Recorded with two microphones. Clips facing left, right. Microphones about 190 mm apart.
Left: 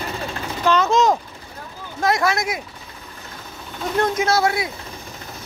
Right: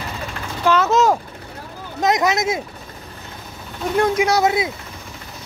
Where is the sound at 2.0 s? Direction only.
20° right (ahead or behind).